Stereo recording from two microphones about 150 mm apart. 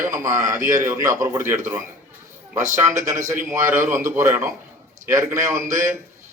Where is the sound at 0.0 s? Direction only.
20° right (ahead or behind).